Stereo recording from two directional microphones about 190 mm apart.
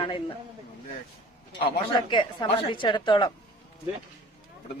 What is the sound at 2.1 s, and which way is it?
Speech, 25° left (ahead or behind).